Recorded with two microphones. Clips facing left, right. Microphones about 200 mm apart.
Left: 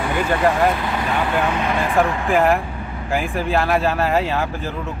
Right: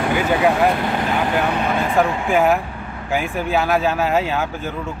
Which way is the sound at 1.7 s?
Centre (ahead or behind).